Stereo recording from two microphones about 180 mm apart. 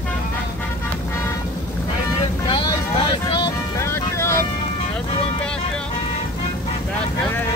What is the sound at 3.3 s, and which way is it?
Music, 25° left (ahead or behind).